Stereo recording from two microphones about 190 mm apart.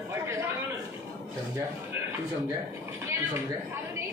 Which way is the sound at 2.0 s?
15° right (ahead or behind).